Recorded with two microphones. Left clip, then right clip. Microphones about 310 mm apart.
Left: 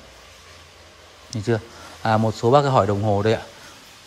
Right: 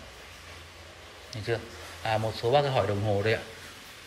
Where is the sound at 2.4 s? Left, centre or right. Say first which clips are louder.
Left 8 dB; left.